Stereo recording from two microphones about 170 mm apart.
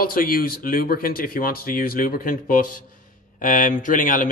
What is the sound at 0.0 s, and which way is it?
A man's voice, 55° left (ahead or behind).